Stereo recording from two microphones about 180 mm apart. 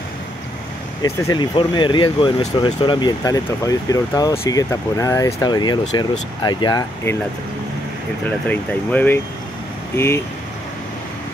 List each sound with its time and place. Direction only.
1.0 s speech: 20° left (ahead or behind)
8.5 s speech: 10° left (ahead or behind)